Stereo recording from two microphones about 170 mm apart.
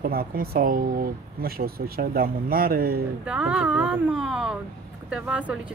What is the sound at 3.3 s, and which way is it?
Speech, 5° right (ahead or behind).